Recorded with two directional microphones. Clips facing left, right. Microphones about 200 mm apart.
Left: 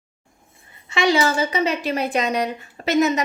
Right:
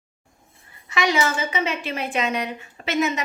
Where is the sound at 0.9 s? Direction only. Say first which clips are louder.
Left 4 dB; 30° left (ahead or behind).